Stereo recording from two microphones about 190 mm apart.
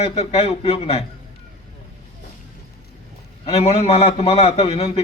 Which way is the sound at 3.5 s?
35° left (ahead or behind).